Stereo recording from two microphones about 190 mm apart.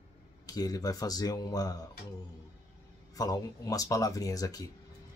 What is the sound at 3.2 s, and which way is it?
Speech, 20° left (ahead or behind).